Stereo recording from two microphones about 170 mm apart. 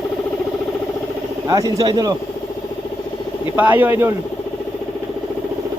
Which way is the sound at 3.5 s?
10° right (ahead or behind).